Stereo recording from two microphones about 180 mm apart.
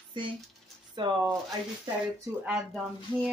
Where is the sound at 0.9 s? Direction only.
25° right (ahead or behind).